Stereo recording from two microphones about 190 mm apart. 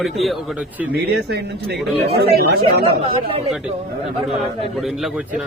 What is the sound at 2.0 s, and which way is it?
Speech, 55° right (ahead or behind).